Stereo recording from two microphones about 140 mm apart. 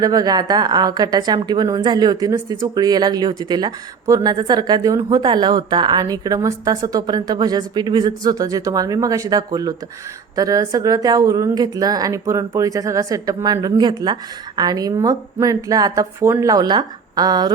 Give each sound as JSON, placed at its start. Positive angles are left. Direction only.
{"t": 0.0, "sound": "speech", "side_deg": -25}